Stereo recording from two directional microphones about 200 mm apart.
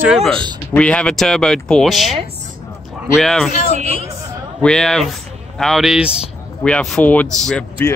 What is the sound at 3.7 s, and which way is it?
Speech, 35° right (ahead or behind).